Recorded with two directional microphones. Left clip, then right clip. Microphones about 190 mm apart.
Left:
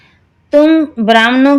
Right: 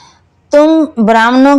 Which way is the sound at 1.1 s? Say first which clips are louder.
Right 1 dB; 10° right (ahead or behind).